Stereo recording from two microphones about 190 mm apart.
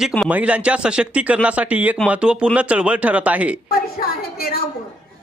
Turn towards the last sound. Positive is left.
turn(degrees=50)  # may be behind; listen again after turning